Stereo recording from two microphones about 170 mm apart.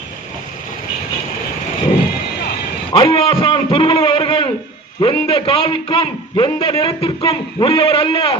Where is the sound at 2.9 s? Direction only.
25° left (ahead or behind).